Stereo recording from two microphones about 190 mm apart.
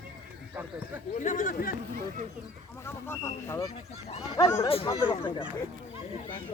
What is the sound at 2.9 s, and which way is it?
Speech, 10° left (ahead or behind).